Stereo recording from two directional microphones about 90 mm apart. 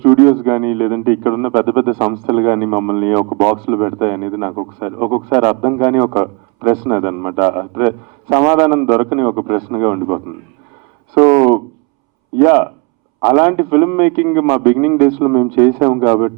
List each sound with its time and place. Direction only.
0.0 s a man's voice: 15° right (ahead or behind)